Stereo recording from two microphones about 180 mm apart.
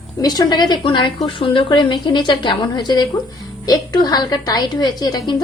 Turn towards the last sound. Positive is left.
turn(degrees=25)  # may be behind; listen again after turning